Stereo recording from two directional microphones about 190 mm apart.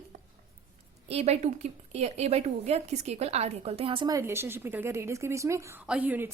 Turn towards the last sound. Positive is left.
turn(degrees=-10)  # may be behind; listen again after turning